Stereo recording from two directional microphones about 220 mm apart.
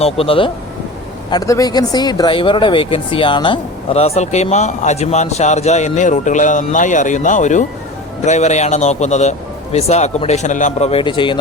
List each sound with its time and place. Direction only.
0.0 s a man's voice: 25° left (ahead or behind)